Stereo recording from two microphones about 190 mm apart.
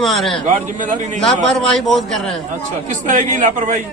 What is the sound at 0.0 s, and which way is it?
Speech, centre (ahead or behind).